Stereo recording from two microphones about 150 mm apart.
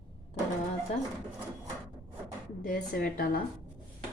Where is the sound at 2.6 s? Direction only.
70° left (ahead or behind).